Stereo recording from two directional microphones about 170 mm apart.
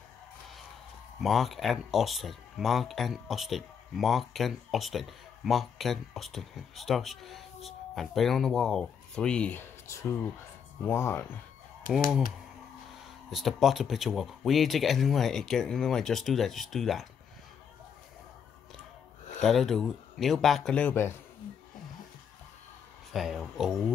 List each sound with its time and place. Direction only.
1.2 s speech: centre (ahead or behind)
11.9 s speech: 55° left (ahead or behind)
13.3 s speech: centre (ahead or behind)
19.4 s speech: centre (ahead or behind)
23.1 s speech: centre (ahead or behind)